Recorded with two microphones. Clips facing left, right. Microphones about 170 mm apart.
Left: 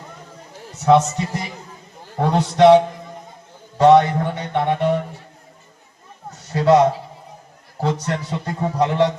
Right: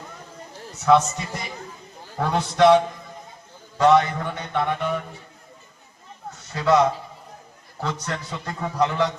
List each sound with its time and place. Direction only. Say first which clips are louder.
0.9 s a man's voice: left 3 dB; 30° left (ahead or behind)
3.8 s a man's voice: left 5 dB; 30° left (ahead or behind)
6.5 s a man's voice: left 5 dB; 35° left (ahead or behind)